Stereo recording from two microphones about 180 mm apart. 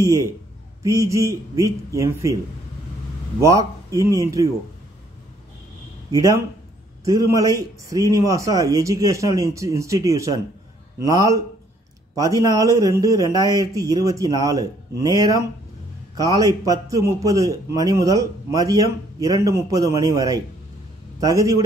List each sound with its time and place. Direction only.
0.0 s a man's voice: 15° right (ahead or behind)
3.3 s a man's voice: 15° right (ahead or behind)
6.1 s a man's voice: 20° right (ahead or behind)